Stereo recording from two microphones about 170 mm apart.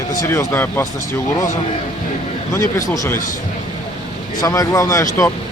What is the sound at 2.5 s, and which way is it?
Speech, 20° left (ahead or behind).